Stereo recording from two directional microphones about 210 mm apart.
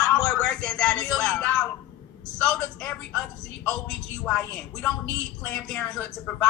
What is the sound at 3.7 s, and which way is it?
A woman's voice, 5° left (ahead or behind).